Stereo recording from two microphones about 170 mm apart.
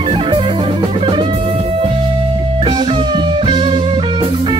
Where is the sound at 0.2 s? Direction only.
30° right (ahead or behind).